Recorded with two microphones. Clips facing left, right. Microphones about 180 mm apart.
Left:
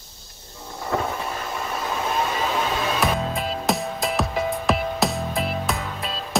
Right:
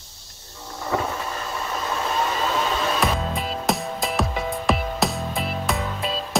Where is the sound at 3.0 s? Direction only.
Centre (ahead or behind).